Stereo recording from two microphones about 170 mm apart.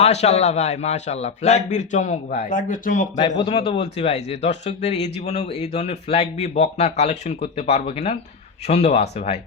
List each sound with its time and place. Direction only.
0.0 s speech: 40° left (ahead or behind)
3.2 s a man's voice: 25° left (ahead or behind)
3.5 s speech: 35° left (ahead or behind)